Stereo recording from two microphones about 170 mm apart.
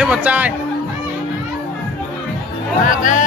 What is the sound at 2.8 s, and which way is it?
Music, 50° left (ahead or behind).